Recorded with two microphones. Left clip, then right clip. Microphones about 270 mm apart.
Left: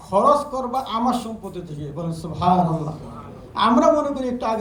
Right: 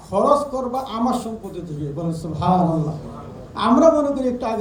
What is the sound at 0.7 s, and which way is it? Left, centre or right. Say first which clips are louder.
Speech: left 1 dB; left.